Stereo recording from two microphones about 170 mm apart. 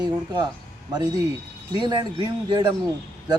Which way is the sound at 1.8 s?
30° right (ahead or behind).